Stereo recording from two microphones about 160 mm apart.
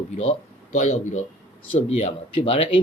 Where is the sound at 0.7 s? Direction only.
45° left (ahead or behind).